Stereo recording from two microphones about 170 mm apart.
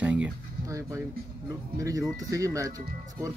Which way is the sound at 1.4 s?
20° right (ahead or behind).